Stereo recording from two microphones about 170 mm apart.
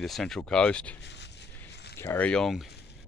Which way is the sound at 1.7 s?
80° left.